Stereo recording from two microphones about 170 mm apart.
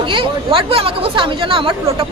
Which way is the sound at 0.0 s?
30° right (ahead or behind).